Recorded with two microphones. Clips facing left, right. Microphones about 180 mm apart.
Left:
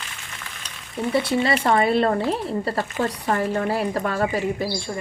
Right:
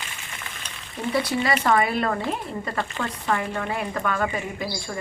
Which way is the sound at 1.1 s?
25° left (ahead or behind).